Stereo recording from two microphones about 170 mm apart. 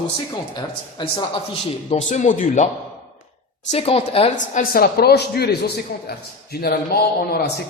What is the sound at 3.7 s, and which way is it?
Speech, 35° left (ahead or behind).